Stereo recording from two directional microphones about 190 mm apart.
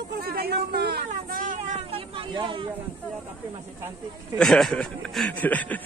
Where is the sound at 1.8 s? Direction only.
30° right (ahead or behind).